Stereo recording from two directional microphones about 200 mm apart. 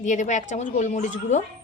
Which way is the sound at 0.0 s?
35° left (ahead or behind).